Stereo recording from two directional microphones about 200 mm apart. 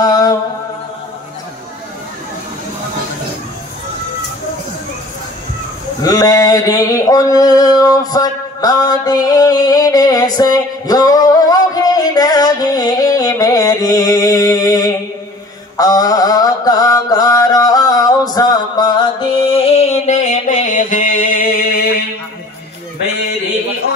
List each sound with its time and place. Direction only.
0.0 s mantra: 15° left (ahead or behind)
6.0 s a sound: 15° left (ahead or behind)
15.8 s mantra: 20° left (ahead or behind); by 21.8 s 50° left (ahead or behind)